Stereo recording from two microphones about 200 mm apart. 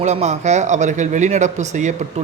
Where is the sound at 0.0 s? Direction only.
35° right (ahead or behind).